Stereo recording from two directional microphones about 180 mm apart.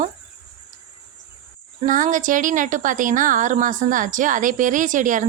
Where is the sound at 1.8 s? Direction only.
45° right (ahead or behind).